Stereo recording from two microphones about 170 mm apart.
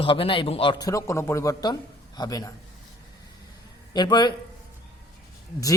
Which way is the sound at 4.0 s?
25° left (ahead or behind).